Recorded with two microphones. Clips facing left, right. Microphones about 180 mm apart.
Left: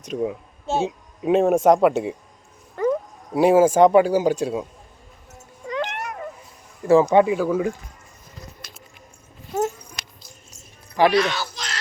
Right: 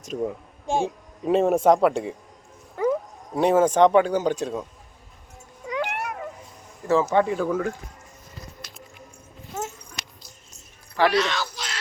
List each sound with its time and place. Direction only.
0.0 s speech: centre (ahead or behind)
0.7 s speech: 15° right (ahead or behind)
1.2 s speech: 5° left (ahead or behind)
2.8 s a sound: 10° right (ahead or behind)
3.3 s speech: 5° left (ahead or behind)
5.6 s a sound: 10° right (ahead or behind)
7.1 s speech: 10° left (ahead or behind)
10.9 s speech: 15° left (ahead or behind)
11.5 s a sound: 10° right (ahead or behind)